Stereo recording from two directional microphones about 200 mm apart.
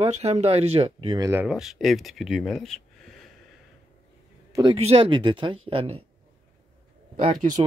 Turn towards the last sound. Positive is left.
turn(degrees=-40)  # may be behind; listen again after turning